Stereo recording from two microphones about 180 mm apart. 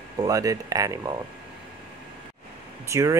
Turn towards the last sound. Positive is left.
turn(degrees=-15)  # may be behind; listen again after turning